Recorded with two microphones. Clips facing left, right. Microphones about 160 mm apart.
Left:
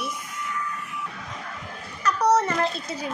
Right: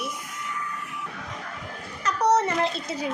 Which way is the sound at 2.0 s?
25° right (ahead or behind).